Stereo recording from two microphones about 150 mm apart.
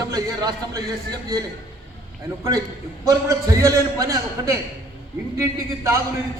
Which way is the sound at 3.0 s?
20° right (ahead or behind).